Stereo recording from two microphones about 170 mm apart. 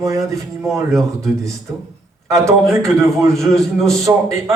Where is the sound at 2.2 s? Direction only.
15° right (ahead or behind).